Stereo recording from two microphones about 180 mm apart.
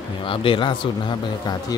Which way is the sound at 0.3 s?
30° left (ahead or behind).